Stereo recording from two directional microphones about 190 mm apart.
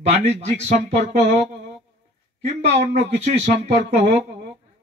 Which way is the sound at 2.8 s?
40° right (ahead or behind).